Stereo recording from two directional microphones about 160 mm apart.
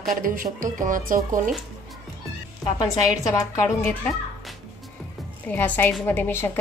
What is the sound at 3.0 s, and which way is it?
Speech, 20° left (ahead or behind).